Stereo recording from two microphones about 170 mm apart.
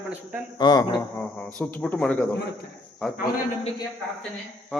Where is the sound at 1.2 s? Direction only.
10° left (ahead or behind).